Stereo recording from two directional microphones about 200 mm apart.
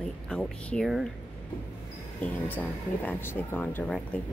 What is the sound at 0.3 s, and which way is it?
Speech, 5° left (ahead or behind).